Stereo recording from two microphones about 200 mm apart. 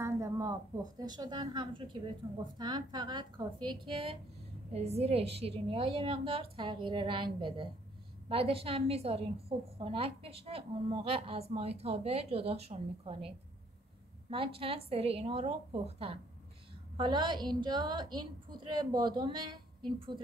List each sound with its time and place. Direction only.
0.0 s a woman's voice: 15° right (ahead or behind)
14.3 s a woman's voice: 25° right (ahead or behind)